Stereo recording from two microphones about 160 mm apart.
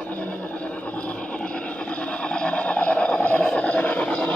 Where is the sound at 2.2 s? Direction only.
5° left (ahead or behind).